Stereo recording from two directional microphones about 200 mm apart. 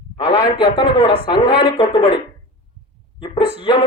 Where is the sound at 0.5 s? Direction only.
25° left (ahead or behind).